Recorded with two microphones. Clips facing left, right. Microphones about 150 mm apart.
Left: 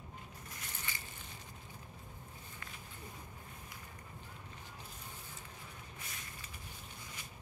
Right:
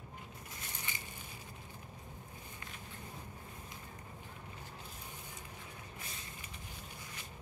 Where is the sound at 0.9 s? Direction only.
20° right (ahead or behind).